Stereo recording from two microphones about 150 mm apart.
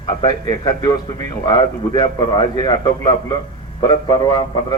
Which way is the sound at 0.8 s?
25° left (ahead or behind).